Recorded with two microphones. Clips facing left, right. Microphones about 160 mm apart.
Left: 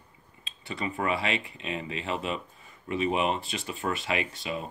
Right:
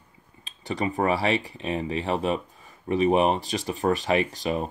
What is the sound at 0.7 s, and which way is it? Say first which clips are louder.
Speech: right 6 dB; 35° right (ahead or behind).